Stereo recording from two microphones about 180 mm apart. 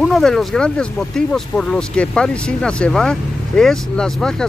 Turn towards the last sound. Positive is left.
turn(degrees=5)  # may be behind; listen again after turning